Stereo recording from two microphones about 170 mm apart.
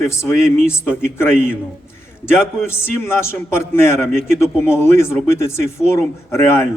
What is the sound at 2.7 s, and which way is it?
A man's voice, 15° left (ahead or behind).